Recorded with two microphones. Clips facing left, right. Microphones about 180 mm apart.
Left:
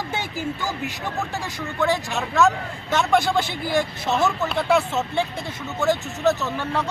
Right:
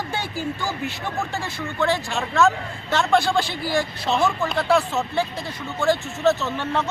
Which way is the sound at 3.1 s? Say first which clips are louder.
Right 1 dB; 20° left (ahead or behind).